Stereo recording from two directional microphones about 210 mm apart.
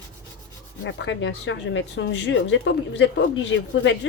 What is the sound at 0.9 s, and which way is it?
Speech, 60° left (ahead or behind).